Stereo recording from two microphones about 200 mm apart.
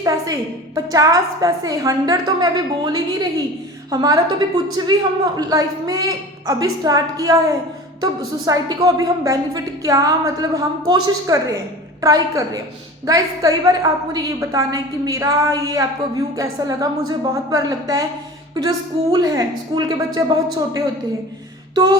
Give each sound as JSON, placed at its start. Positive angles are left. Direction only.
{"t": 0.0, "sound": "a woman's voice", "side_deg": -15}
{"t": 19.1, "sound": "a woman's voice", "side_deg": -20}